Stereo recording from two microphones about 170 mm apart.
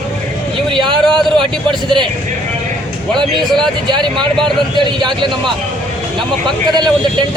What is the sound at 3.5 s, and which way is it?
A man's voice, 25° right (ahead or behind).